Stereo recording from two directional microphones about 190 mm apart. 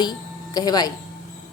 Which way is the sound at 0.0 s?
20° left (ahead or behind).